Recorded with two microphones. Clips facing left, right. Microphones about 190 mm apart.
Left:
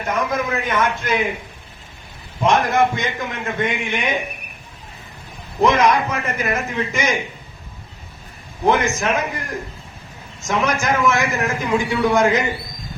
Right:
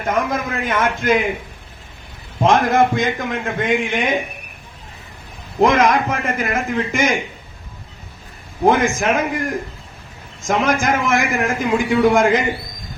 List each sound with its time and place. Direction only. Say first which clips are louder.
0.0 s a man's voice: right 1 dB; 50° right (ahead or behind)
2.5 s a man's voice: right 2 dB; 50° right (ahead or behind)
5.6 s a man's voice: right 1 dB; 50° right (ahead or behind)
8.6 s a man's voice: right 3 dB; 50° right (ahead or behind)